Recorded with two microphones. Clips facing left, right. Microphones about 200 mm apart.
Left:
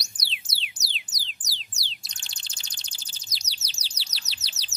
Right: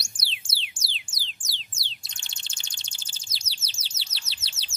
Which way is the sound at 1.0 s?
30° right (ahead or behind).